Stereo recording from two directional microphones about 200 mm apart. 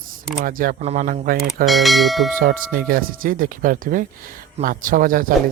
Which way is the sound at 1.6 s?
Centre (ahead or behind).